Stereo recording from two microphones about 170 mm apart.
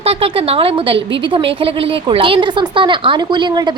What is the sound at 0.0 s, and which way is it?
Speech, 35° right (ahead or behind).